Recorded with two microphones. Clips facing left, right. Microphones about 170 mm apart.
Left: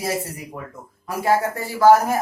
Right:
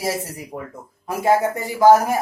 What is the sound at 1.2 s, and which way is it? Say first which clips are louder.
Speech: right 2 dB; 20° right (ahead or behind).